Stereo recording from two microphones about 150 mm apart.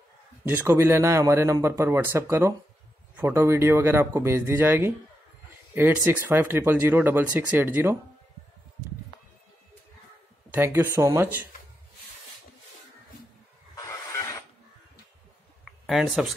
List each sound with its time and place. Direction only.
0.5 s speech: 15° right (ahead or behind)
10.5 s speech: 15° right (ahead or behind)
13.7 s train: 20° left (ahead or behind)
15.6 s a sound: centre (ahead or behind)